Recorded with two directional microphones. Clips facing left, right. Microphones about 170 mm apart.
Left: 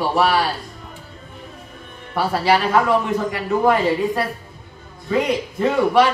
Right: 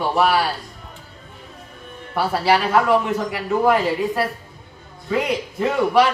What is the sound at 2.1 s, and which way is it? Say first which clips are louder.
A man's voice: left 1 dB; 5° right (ahead or behind).